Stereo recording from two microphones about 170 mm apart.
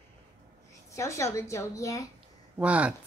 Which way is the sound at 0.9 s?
20° left (ahead or behind).